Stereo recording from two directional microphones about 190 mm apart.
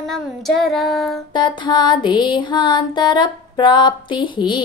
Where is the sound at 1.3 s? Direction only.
25° left (ahead or behind).